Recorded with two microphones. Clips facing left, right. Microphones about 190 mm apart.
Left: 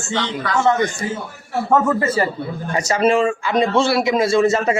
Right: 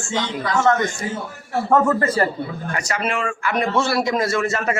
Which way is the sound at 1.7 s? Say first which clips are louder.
Even; 5° left (ahead or behind).